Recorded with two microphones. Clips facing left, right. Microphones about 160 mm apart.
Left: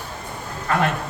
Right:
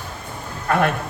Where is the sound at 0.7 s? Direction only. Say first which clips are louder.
Right 2 dB; 55° right (ahead or behind).